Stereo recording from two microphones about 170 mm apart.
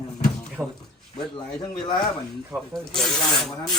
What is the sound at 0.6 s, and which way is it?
Speech, 15° right (ahead or behind).